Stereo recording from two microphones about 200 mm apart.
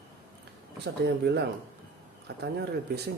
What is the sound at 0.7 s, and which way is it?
Speech, 55° right (ahead or behind).